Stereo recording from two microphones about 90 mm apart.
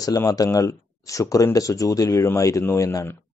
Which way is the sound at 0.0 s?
40° left (ahead or behind).